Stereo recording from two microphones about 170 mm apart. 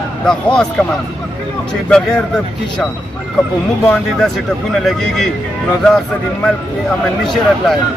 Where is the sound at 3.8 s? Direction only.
Centre (ahead or behind).